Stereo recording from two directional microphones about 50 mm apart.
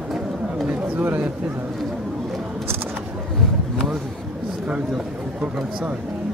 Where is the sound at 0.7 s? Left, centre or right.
Right.